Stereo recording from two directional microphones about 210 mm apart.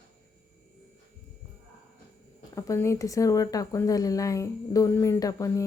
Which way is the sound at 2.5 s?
15° left (ahead or behind).